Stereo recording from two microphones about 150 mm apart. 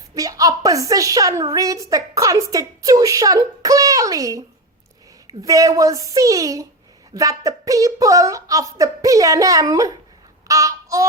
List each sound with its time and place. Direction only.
0.1 s a woman's voice: 25° right (ahead or behind)
10.5 s child singing: 20° right (ahead or behind)